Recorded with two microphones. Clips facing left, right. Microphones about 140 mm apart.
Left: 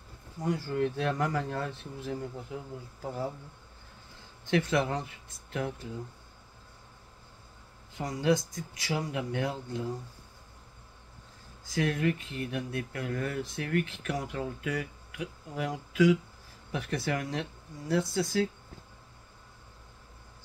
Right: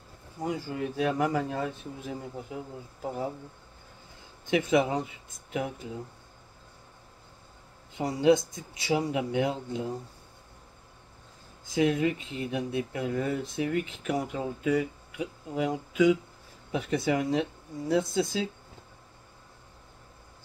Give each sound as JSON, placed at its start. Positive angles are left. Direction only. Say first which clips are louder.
{"t": 0.4, "sound": "speech", "louder": "left 2 dB", "side_deg": -10}
{"t": 4.5, "sound": "speech", "louder": "right 3 dB", "side_deg": -15}
{"t": 8.0, "sound": "speech", "louder": "right 5 dB", "side_deg": -25}
{"t": 11.7, "sound": "speech", "louder": "right 4 dB", "side_deg": -20}